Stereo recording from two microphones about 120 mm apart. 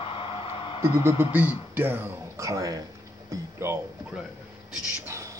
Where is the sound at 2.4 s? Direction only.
30° right (ahead or behind).